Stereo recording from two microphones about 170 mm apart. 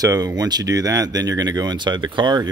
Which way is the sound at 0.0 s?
20° right (ahead or behind).